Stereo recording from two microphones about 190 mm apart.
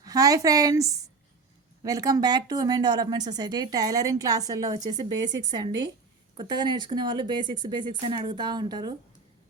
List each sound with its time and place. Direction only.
0.0 s speech: 20° right (ahead or behind)